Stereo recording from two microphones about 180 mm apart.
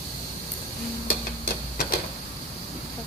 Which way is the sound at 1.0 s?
60° left (ahead or behind).